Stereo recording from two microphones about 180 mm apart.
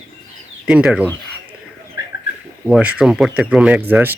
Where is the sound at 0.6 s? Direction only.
5° right (ahead or behind).